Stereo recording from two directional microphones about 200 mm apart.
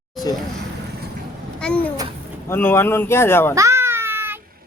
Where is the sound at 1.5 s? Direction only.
5° left (ahead or behind).